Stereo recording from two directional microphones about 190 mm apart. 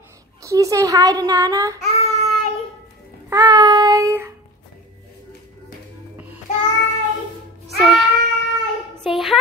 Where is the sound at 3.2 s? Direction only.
20° right (ahead or behind).